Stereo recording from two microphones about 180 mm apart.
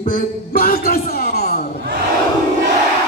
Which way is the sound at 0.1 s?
55° left (ahead or behind).